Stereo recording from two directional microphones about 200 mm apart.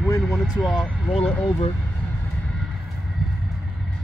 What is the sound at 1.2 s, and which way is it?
Speech, 10° left (ahead or behind).